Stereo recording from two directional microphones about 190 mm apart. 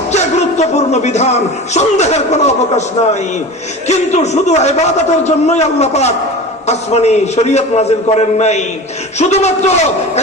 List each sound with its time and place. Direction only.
0.1 s a man's voice: 35° left (ahead or behind)